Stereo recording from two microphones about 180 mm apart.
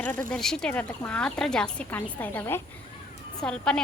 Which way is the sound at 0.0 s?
10° left (ahead or behind).